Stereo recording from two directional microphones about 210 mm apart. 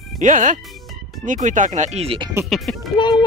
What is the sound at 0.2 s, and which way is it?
Speech, 35° right (ahead or behind).